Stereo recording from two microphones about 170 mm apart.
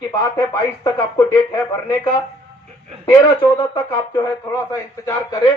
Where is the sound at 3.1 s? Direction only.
20° left (ahead or behind).